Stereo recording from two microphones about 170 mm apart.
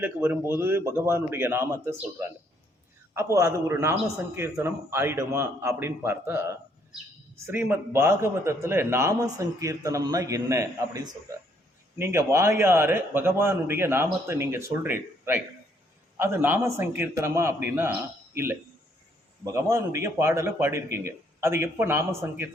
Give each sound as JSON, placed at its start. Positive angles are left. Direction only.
{"t": 0.0, "sound": "a man's voice", "side_deg": -10}
{"t": 19.5, "sound": "a man's voice", "side_deg": -15}